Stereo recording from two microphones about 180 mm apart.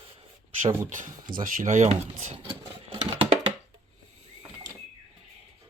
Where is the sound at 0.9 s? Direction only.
45° right (ahead or behind).